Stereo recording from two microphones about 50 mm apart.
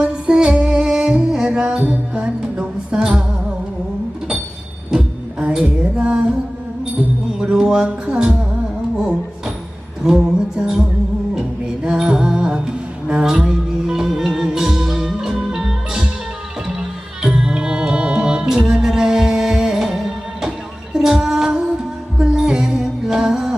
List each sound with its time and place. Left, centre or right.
0.0 s music: centre
4.9 s a sound: right
6.0 s music: centre
7.5 s music: centre
10.0 s music: centre
17.2 s music: centre
20.9 s female singing: centre
22.2 s music: centre